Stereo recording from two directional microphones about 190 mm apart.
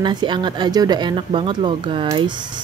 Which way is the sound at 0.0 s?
25° right (ahead or behind).